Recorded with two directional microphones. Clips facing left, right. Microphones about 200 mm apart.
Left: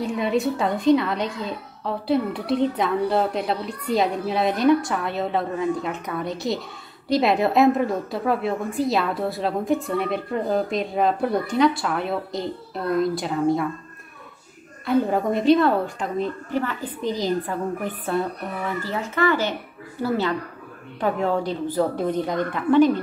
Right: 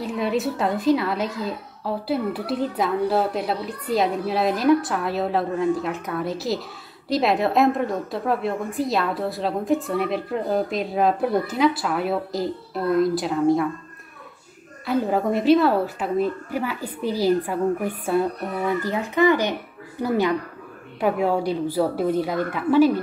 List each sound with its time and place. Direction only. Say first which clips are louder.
0.0 s a woman's voice: left 1 dB; centre (ahead or behind)
14.9 s a woman's voice: left 1 dB; centre (ahead or behind)